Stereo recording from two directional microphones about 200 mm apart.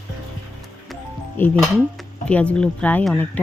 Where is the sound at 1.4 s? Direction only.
10° left (ahead or behind).